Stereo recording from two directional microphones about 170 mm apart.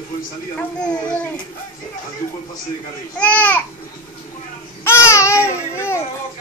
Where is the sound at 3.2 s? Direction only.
10° left (ahead or behind).